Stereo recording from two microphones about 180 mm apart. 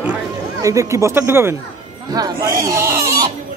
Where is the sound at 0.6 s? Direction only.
15° right (ahead or behind).